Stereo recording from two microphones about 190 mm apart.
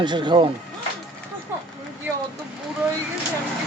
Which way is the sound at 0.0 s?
25° right (ahead or behind).